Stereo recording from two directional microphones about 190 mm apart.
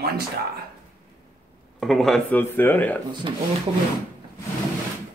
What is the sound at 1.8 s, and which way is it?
Speech, centre (ahead or behind).